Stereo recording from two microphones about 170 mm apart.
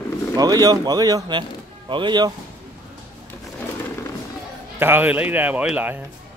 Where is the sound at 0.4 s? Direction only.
20° right (ahead or behind).